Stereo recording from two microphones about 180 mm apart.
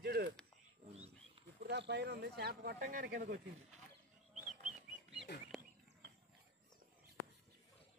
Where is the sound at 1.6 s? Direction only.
70° right (ahead or behind).